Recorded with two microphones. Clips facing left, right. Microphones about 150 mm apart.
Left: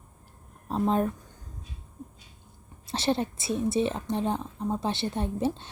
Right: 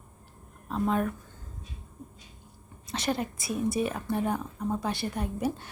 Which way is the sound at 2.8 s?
30° left (ahead or behind).